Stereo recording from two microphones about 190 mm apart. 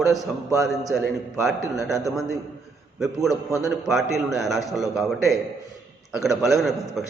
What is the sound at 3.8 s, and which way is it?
A man's voice, centre (ahead or behind).